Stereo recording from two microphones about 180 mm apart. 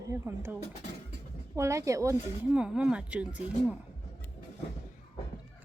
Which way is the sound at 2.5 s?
5° right (ahead or behind).